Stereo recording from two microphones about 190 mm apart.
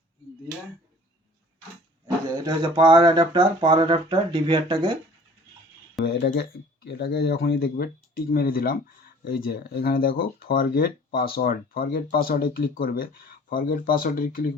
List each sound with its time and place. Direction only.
2.3 s speech: 20° right (ahead or behind)
6.1 s speech: 60° left (ahead or behind)